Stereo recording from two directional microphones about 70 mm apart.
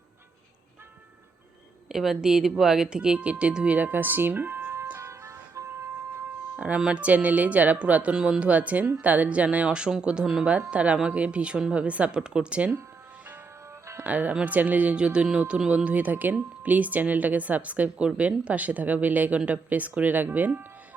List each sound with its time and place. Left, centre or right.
1.9 s speech: centre; by 4.9 s right
4.9 s music: right
6.6 s speech: centre
14.0 s speech: right